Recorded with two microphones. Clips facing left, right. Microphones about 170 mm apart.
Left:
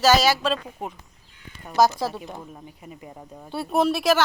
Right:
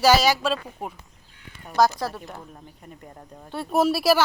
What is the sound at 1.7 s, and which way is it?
A child's voice, 5° left (ahead or behind).